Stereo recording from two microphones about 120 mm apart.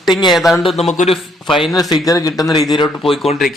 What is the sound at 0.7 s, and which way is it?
Speech, 65° left (ahead or behind).